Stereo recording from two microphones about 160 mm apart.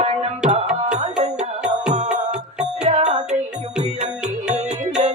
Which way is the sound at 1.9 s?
45° right (ahead or behind).